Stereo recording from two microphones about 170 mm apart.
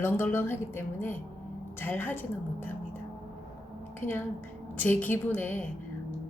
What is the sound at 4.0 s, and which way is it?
A woman's voice, 10° left (ahead or behind).